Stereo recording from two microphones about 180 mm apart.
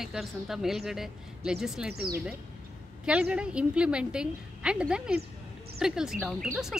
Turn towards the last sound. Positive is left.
turn(degrees=0)  # may be behind; listen again after turning